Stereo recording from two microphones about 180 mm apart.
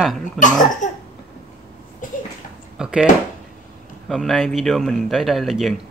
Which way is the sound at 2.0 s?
45° left (ahead or behind).